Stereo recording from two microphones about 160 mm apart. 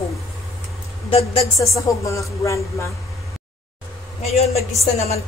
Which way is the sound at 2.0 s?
20° left (ahead or behind).